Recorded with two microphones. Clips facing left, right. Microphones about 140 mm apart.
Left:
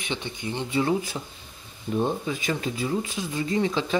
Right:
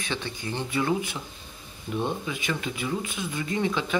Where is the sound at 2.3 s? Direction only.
35° left (ahead or behind).